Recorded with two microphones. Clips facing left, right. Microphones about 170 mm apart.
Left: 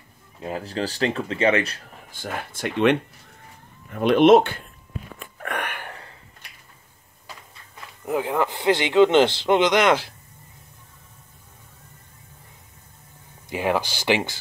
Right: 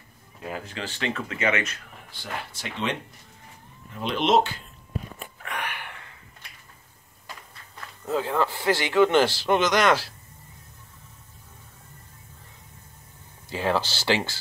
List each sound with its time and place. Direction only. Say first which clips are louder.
0.4 s speech: left 6 dB; 35° left (ahead or behind)
2.1 s speech: left 4 dB; 50° left (ahead or behind)
5.4 s a sound: left 4 dB; 55° left (ahead or behind); by 6.1 s 40° left (ahead or behind)
8.0 s speech: left 2 dB; 15° left (ahead or behind)
13.5 s speech: left 2 dB; 15° left (ahead or behind)